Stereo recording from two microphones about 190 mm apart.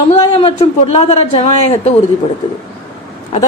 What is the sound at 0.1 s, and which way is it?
Speech, 30° left (ahead or behind).